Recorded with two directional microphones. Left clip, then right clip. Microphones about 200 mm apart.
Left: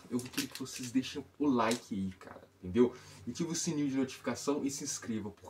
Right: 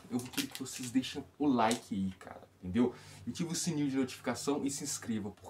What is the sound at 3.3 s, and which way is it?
Speech, 15° right (ahead or behind).